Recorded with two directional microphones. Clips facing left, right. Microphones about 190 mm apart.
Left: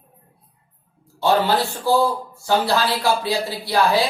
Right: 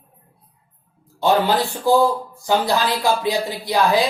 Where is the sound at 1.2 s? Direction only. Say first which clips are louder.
Right 1 dB; 15° right (ahead or behind).